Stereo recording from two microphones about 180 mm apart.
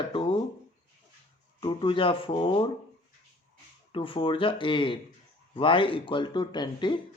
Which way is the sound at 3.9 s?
30° left (ahead or behind).